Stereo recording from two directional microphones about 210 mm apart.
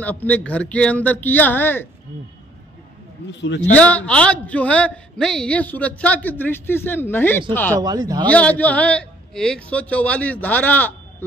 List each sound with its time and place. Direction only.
0.0 s a woman's voice: 10° left (ahead or behind)
3.3 s a man's voice: 55° left (ahead or behind)
3.7 s a woman's voice: 5° left (ahead or behind)
7.7 s speech: 15° right (ahead or behind)
8.3 s a woman's voice: 5° left (ahead or behind)